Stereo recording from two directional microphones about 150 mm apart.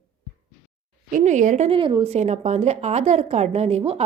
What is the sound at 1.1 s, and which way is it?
A woman's voice, 55° right (ahead or behind).